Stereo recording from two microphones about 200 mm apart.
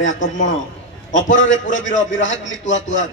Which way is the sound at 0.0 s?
40° left (ahead or behind).